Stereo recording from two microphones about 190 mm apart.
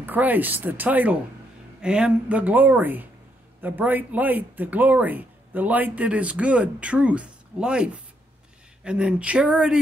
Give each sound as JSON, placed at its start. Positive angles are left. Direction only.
{"t": 0.0, "sound": "speech", "side_deg": -10}